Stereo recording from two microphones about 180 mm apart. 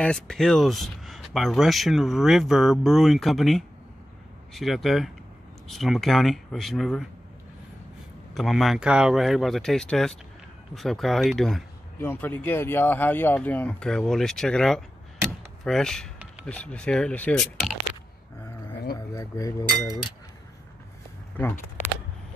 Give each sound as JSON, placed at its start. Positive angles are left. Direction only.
{"t": 0.0, "sound": "speech", "side_deg": 5}
{"t": 8.4, "sound": "speech", "side_deg": 0}
{"t": 12.0, "sound": "speech", "side_deg": 10}
{"t": 18.9, "sound": "speech", "side_deg": 20}
{"t": 21.4, "sound": "speech", "side_deg": 10}